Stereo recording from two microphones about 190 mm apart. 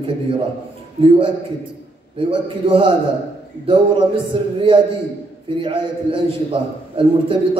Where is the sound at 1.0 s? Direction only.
25° right (ahead or behind).